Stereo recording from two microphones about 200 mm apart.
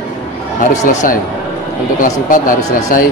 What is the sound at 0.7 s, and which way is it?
Speech, 35° left (ahead or behind).